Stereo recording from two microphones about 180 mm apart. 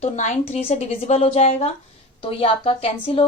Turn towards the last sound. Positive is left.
turn(degrees=30)  # may be behind; listen again after turning